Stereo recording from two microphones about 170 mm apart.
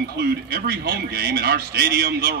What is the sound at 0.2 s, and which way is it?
A man's voice, 65° right (ahead or behind).